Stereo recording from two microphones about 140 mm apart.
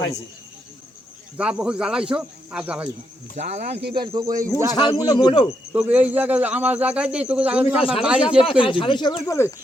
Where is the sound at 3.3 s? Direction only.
55° right (ahead or behind).